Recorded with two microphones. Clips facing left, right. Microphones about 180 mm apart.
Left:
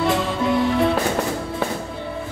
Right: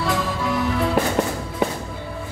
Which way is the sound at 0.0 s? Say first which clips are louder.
Left 3 dB; 25° left (ahead or behind).